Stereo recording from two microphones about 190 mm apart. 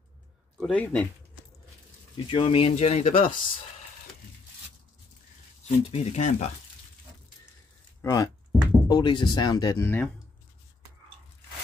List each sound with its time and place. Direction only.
0.6 s speech: 5° left (ahead or behind)
2.1 s speech: 30° left (ahead or behind)
5.7 s speech: 35° left (ahead or behind)
8.0 s speech: 15° left (ahead or behind)